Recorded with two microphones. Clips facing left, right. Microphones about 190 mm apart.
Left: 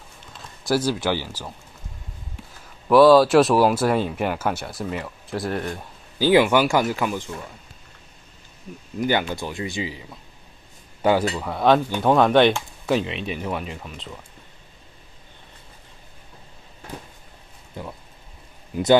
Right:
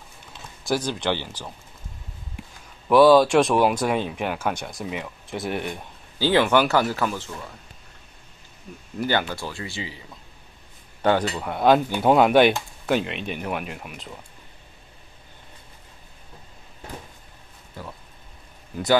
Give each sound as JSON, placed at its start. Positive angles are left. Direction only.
{"t": 0.7, "sound": "speech", "side_deg": 5}
{"t": 2.9, "sound": "speech", "side_deg": 0}
{"t": 6.1, "sound": "speech", "side_deg": 15}
{"t": 9.0, "sound": "speech", "side_deg": 15}
{"t": 11.8, "sound": "speech", "side_deg": -15}
{"t": 17.8, "sound": "a sound", "side_deg": 20}